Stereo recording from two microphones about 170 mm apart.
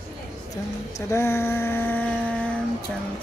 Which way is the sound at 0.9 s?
15° left (ahead or behind).